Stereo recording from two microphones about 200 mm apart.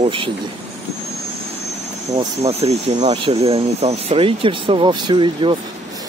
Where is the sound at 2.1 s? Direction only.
30° right (ahead or behind).